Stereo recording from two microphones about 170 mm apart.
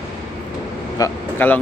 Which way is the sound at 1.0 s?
10° left (ahead or behind).